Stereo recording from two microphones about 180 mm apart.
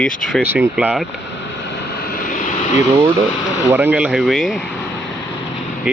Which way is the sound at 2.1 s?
45° left (ahead or behind).